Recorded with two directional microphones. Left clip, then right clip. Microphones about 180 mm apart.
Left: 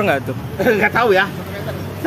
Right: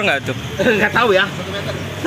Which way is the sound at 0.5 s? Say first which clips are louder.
Even; 20° left (ahead or behind).